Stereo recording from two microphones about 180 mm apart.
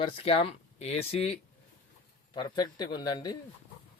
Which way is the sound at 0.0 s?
30° left (ahead or behind).